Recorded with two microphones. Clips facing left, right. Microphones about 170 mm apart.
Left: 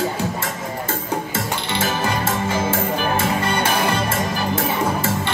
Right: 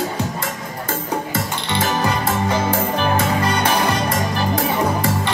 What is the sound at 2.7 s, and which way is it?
Music, 25° left (ahead or behind).